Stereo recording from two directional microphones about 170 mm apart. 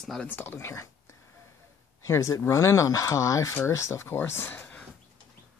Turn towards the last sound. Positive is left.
turn(degrees=10)  # may be behind; listen again after turning